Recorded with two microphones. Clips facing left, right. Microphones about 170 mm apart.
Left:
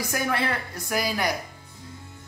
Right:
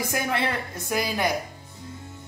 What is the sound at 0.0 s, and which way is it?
A man's voice, 20° right (ahead or behind).